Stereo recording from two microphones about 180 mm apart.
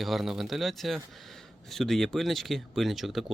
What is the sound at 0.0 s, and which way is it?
Speech, centre (ahead or behind).